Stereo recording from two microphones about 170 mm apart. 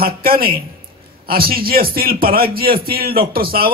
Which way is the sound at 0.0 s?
60° right (ahead or behind).